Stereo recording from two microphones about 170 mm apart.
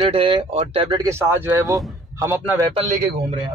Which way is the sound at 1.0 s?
15° right (ahead or behind).